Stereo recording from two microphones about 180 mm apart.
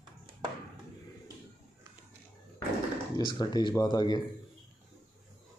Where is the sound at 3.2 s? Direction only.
25° left (ahead or behind).